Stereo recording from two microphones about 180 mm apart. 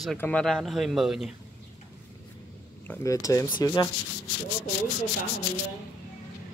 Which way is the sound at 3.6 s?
20° left (ahead or behind).